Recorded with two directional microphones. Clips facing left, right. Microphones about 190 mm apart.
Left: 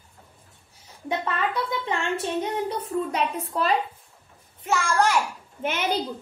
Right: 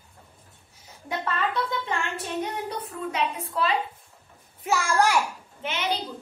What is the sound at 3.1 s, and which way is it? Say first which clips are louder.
Speech: left 2 dB; 45° left (ahead or behind).